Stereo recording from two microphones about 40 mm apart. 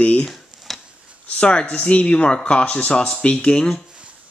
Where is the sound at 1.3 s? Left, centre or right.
Left.